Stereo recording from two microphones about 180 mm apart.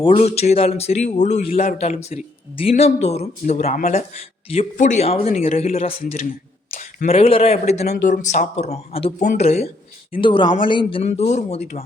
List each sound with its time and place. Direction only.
0.0 s speech: 30° left (ahead or behind)